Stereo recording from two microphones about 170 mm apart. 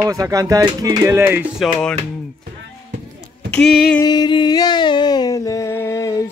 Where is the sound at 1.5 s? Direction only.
Centre (ahead or behind).